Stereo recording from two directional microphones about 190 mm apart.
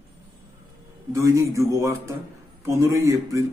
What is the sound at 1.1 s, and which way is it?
A man's voice, 15° right (ahead or behind).